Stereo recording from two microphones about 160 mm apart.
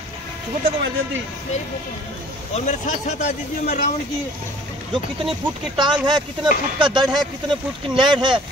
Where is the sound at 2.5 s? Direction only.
45° left (ahead or behind).